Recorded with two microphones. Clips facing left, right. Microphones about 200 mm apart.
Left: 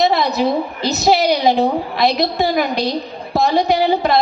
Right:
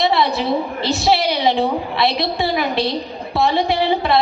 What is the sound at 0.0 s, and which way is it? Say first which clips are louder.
A woman's voice: left 2 dB; 45° left (ahead or behind).